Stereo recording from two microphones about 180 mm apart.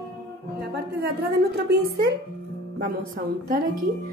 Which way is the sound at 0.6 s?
60° right (ahead or behind).